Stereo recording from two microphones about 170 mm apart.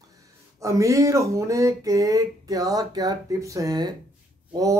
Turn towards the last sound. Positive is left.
turn(degrees=-20)  # may be behind; listen again after turning